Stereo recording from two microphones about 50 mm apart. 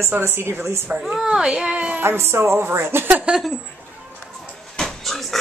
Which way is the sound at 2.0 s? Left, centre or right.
Right.